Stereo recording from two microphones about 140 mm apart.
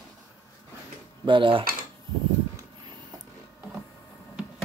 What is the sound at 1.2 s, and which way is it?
Speech, 35° right (ahead or behind).